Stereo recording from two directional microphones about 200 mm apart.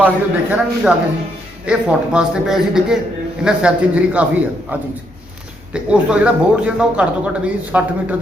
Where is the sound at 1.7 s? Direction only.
5° right (ahead or behind).